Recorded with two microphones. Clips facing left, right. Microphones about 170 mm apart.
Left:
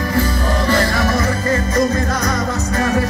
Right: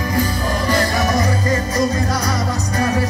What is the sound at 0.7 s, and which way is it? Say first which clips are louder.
Music: even; 15° right (ahead or behind).